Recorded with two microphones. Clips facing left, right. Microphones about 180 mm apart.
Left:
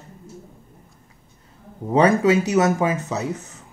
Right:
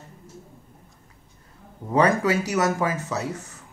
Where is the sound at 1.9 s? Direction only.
20° left (ahead or behind).